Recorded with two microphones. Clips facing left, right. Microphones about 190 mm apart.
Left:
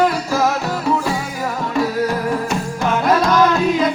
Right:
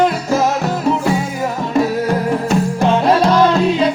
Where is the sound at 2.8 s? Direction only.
30° right (ahead or behind).